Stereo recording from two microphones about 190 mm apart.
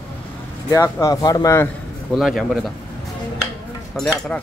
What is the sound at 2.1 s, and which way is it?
Speech, centre (ahead or behind).